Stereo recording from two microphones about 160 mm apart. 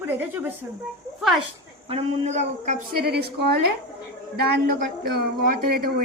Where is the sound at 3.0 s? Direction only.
80° right.